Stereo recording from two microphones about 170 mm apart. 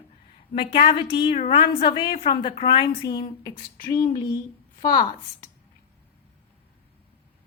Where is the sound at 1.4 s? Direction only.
45° left (ahead or behind).